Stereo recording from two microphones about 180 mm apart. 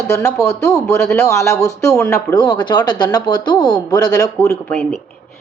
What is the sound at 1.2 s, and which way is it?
Speech, 20° left (ahead or behind).